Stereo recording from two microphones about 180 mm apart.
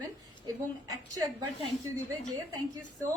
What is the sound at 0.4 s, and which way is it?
Speech, 20° right (ahead or behind).